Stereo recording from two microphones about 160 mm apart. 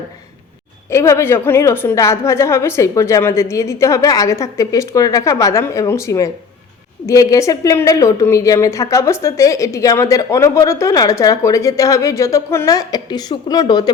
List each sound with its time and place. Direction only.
0.9 s a woman's voice: 15° left (ahead or behind)